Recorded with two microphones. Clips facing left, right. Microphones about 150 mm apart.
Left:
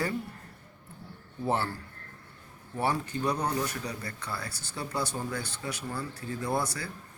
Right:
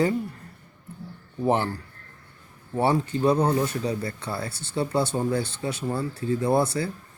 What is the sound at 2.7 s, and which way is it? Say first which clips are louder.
Speech: right 7 dB; 25° right (ahead or behind).